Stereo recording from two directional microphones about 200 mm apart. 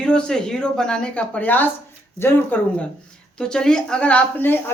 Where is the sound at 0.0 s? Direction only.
5° left (ahead or behind).